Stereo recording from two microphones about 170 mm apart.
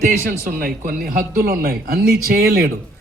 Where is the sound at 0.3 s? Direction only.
60° right (ahead or behind).